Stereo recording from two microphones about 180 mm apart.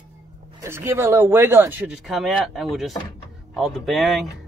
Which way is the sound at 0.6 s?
15° right (ahead or behind).